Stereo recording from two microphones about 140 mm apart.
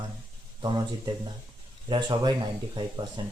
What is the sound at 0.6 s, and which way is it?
Speech, 30° right (ahead or behind).